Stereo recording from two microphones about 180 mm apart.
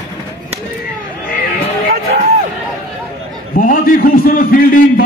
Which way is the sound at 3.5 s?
50° left (ahead or behind).